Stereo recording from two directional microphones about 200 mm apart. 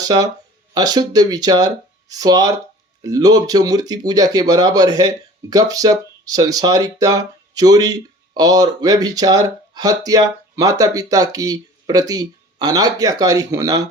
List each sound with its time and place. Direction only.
0.0 s speech: 20° right (ahead or behind)